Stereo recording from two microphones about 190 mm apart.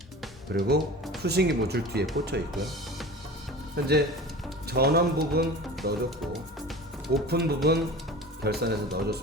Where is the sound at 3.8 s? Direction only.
55° right (ahead or behind).